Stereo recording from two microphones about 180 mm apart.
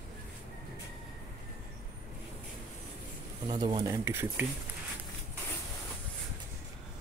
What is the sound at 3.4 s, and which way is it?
Speech, 25° right (ahead or behind).